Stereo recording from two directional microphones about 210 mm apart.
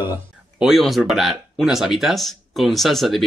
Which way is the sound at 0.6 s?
Centre (ahead or behind).